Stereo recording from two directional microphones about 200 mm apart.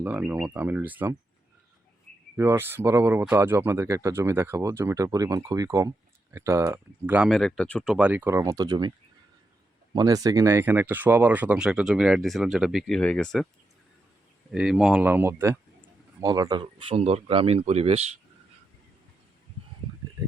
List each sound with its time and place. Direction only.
0.0 s speech: 10° right (ahead or behind)
2.3 s speech: 10° right (ahead or behind); by 7.9 s 5° left (ahead or behind)
7.9 s speech: 5° right (ahead or behind)
9.9 s speech: 20° right (ahead or behind); by 13.5 s 5° left (ahead or behind)
14.5 s speech: 5° right (ahead or behind); by 18.1 s 30° right (ahead or behind)